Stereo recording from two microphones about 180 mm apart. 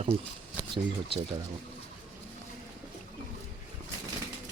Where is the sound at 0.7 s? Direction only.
30° right (ahead or behind).